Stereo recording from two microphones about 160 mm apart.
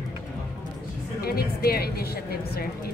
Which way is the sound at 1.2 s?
70° left (ahead or behind).